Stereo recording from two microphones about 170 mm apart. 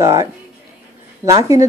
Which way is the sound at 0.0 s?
20° right (ahead or behind).